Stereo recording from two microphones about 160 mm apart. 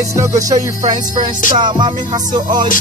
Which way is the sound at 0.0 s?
20° right (ahead or behind).